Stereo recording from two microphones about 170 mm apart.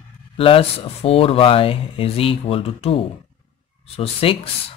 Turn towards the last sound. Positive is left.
turn(degrees=35)  # may be behind; listen again after turning